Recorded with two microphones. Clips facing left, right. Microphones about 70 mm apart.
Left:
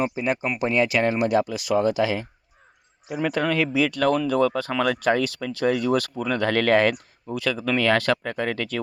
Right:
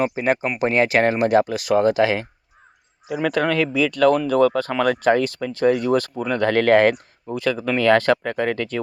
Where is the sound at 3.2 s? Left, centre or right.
Right.